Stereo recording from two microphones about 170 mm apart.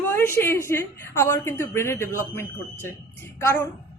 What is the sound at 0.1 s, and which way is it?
Speech, 15° left (ahead or behind).